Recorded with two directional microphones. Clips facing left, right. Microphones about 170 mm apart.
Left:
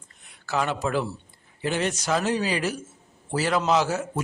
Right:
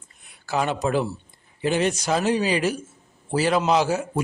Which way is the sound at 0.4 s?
20° right (ahead or behind).